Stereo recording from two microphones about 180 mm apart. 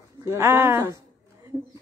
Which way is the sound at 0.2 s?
15° right (ahead or behind).